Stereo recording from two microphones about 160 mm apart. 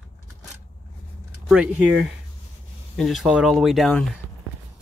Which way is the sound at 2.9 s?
Centre (ahead or behind).